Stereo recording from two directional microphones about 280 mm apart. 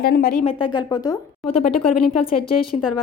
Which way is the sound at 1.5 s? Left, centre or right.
Left.